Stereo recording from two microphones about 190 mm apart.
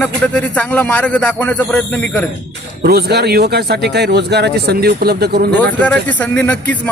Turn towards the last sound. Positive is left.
turn(degrees=10)  # may be behind; listen again after turning